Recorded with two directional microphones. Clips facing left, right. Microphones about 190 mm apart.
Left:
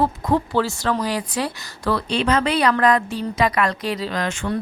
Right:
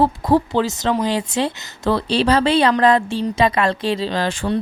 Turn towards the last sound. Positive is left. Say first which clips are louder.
# right 3 dB
turn(degrees=-30)  # may be behind; listen again after turning